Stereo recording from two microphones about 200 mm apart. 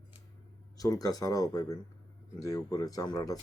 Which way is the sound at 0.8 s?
15° left (ahead or behind).